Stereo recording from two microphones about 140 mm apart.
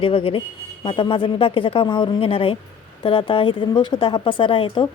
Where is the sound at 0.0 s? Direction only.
40° left (ahead or behind).